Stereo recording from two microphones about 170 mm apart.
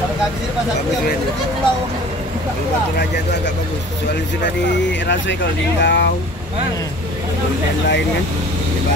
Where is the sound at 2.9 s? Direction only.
90° left.